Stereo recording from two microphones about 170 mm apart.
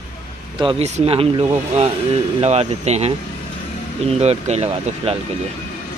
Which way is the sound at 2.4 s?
40° right (ahead or behind).